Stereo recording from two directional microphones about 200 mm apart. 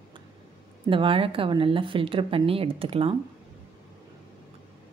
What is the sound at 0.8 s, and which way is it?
A woman's voice, 25° right (ahead or behind).